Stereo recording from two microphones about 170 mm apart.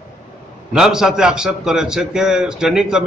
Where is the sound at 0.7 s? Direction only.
5° right (ahead or behind).